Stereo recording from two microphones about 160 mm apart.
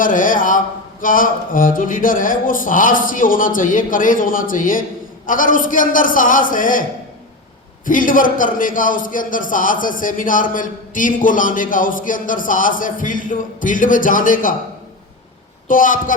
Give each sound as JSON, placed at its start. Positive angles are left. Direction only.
{"t": 0.0, "sound": "a sound", "side_deg": 55}
{"t": 1.0, "sound": "a man's voice", "side_deg": 60}
{"t": 7.9, "sound": "a man's voice", "side_deg": 55}
{"t": 15.6, "sound": "a man's voice", "side_deg": 55}